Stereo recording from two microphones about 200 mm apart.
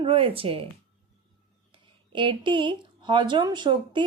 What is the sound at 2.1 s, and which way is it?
Speech, 25° right (ahead or behind).